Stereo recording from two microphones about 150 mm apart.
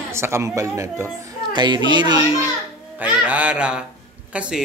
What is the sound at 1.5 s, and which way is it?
Speech, 30° right (ahead or behind).